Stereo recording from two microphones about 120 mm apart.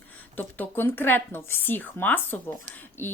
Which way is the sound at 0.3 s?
15° left (ahead or behind).